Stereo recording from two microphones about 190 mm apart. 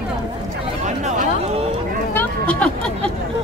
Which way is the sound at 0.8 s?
40° right (ahead or behind).